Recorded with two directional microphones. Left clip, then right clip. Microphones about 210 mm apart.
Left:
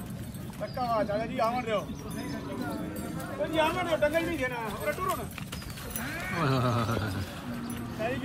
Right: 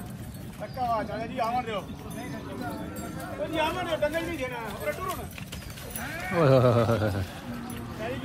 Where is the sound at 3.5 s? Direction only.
30° left (ahead or behind).